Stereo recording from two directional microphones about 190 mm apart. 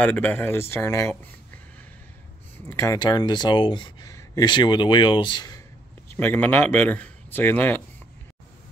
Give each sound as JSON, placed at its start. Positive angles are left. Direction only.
{"t": 0.0, "sound": "speech", "side_deg": 10}
{"t": 2.5, "sound": "speech", "side_deg": 15}
{"t": 6.0, "sound": "a man's voice", "side_deg": 10}